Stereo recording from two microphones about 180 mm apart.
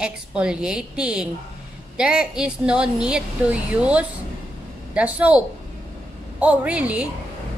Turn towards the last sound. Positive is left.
turn(degrees=-5)  # may be behind; listen again after turning